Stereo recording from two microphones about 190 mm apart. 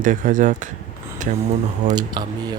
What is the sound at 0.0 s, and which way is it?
Speech, 45° right (ahead or behind).